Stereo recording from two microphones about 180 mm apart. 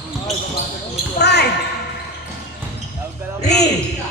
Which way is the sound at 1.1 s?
65° left (ahead or behind).